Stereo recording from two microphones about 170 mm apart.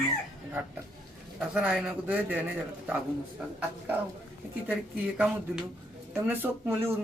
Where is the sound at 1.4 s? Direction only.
5° right (ahead or behind).